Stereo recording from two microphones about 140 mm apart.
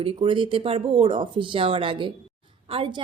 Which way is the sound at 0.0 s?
35° right (ahead or behind).